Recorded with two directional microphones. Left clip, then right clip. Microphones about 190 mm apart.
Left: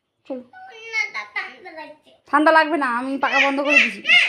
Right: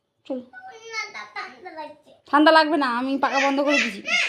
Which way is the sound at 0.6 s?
20° right (ahead or behind).